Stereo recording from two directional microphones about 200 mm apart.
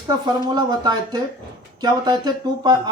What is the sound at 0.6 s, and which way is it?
Speech, 20° right (ahead or behind).